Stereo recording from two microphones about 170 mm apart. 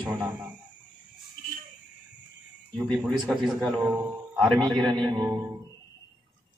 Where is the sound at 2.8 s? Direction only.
Centre (ahead or behind).